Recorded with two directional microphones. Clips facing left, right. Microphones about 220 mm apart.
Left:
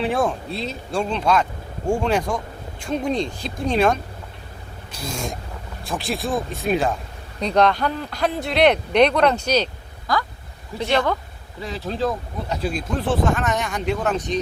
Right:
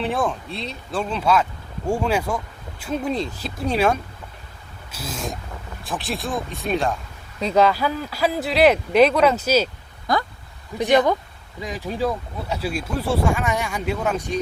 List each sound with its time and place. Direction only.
0.0 s speech: centre (ahead or behind)
10.1 s speech: 20° right (ahead or behind)